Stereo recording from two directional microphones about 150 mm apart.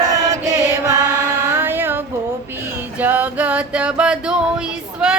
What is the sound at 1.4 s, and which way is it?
Mantra, 15° right (ahead or behind).